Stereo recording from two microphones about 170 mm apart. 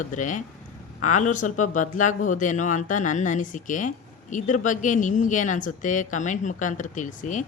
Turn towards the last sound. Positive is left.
turn(degrees=50)  # may be behind; listen again after turning